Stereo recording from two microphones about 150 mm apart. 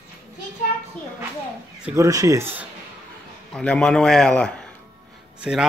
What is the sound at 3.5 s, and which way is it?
A man's voice, 5° left (ahead or behind).